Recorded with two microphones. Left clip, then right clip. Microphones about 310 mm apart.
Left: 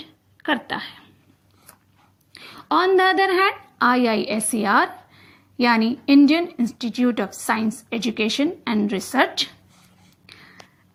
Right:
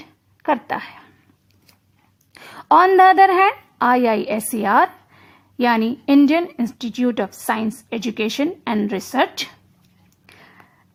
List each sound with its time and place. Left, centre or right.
0.4 s a woman's voice: centre
2.3 s a woman's voice: right
10.2 s whispering: centre